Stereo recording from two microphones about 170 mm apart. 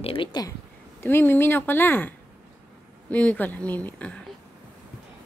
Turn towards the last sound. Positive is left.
turn(degrees=10)  # may be behind; listen again after turning